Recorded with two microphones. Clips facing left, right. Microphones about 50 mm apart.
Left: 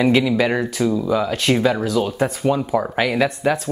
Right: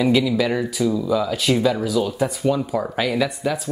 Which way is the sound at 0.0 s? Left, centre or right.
Left.